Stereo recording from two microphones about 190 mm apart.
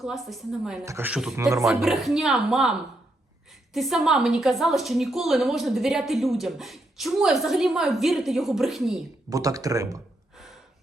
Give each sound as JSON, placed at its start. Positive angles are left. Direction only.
{"t": 0.0, "sound": "a woman's voice", "side_deg": 0}
{"t": 1.4, "sound": "speech", "side_deg": -15}
{"t": 1.6, "sound": "a woman's voice", "side_deg": 0}
{"t": 3.8, "sound": "a woman's voice", "side_deg": 0}
{"t": 9.3, "sound": "speech", "side_deg": -20}
{"t": 10.3, "sound": "gasp", "side_deg": 0}